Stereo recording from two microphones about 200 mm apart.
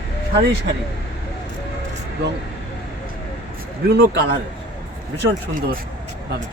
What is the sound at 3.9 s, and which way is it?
Speech, 55° right (ahead or behind).